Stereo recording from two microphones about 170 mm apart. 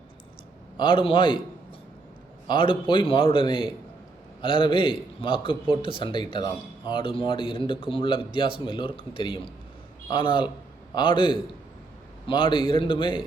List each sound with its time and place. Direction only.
0.8 s a man's voice: 30° left (ahead or behind)
2.5 s a man's voice: 30° left (ahead or behind)